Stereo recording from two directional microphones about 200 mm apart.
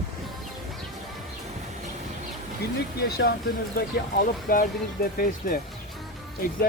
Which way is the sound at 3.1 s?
55° left (ahead or behind).